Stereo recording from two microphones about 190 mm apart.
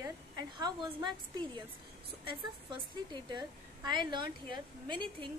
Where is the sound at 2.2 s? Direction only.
25° right (ahead or behind).